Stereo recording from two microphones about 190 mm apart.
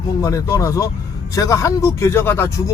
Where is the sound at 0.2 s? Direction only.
15° left (ahead or behind).